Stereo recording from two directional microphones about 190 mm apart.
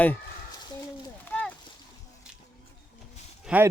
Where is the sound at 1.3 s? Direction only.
10° left (ahead or behind).